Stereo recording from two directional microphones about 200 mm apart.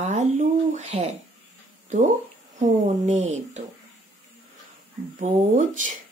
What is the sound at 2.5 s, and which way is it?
Speech, 35° right (ahead or behind).